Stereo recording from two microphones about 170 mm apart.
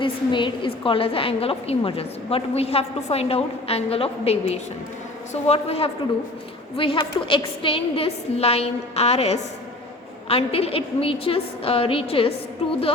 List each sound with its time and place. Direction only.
0.0 s a woman's voice: 30° left (ahead or behind)